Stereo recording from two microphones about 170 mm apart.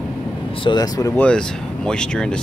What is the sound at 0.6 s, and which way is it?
Speech, 25° left (ahead or behind).